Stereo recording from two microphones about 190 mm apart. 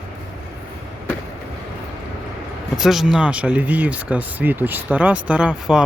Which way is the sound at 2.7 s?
Centre (ahead or behind).